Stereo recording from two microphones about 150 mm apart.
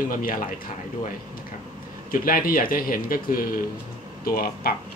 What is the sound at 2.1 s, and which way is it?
Speech, 70° left (ahead or behind).